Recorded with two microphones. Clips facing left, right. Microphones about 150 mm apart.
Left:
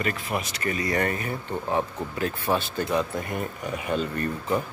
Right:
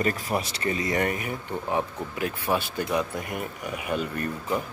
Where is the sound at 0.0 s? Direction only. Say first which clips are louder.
Right 2 dB; 35° right (ahead or behind); by 4.3 s 10° right (ahead or behind).